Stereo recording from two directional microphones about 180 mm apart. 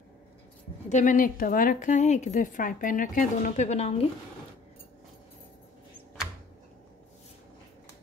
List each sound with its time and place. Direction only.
0.8 s a woman's voice: 45° left (ahead or behind)